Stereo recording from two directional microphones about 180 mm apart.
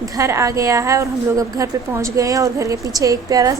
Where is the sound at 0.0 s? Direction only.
15° right (ahead or behind).